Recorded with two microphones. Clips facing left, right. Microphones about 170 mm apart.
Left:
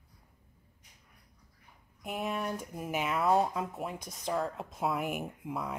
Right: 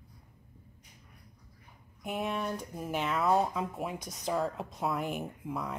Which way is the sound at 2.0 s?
Centre (ahead or behind).